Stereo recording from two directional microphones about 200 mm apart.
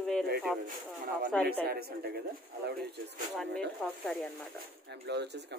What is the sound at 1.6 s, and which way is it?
Speech, 50° right (ahead or behind).